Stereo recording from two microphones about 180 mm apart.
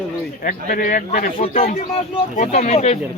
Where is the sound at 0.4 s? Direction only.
50° left (ahead or behind).